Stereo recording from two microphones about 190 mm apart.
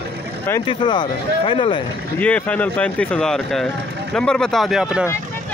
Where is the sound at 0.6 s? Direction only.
25° left (ahead or behind).